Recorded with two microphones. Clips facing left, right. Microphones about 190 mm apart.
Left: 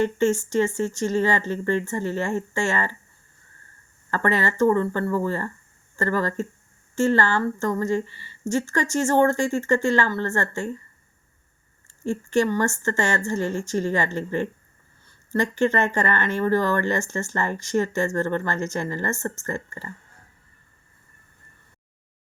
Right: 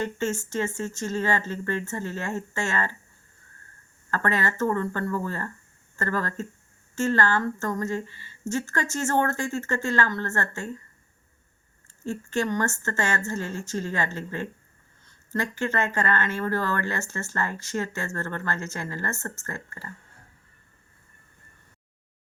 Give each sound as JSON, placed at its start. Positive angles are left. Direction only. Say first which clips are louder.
{"t": 0.0, "sound": "speech", "louder": "left 7 dB", "side_deg": 15}
{"t": 4.1, "sound": "speech", "louder": "left 3 dB", "side_deg": 15}
{"t": 12.0, "sound": "speech", "louder": "left 5 dB", "side_deg": 15}